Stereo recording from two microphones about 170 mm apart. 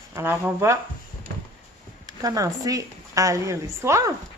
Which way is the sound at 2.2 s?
20° right (ahead or behind).